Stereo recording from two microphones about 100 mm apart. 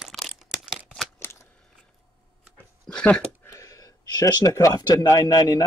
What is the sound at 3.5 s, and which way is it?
Speech, 35° left (ahead or behind).